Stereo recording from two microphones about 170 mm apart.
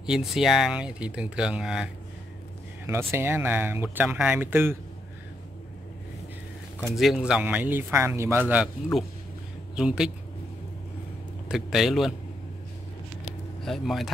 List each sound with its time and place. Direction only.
0.0 s speech: 5° right (ahead or behind)
2.9 s speech: 15° right (ahead or behind)
7.0 s speech: centre (ahead or behind)
9.8 s speech: 5° right (ahead or behind)
11.4 s speech: centre (ahead or behind)
13.7 s speech: centre (ahead or behind)